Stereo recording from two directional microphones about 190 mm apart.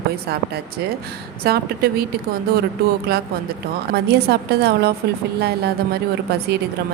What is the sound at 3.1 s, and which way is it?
A woman's voice, 55° right (ahead or behind).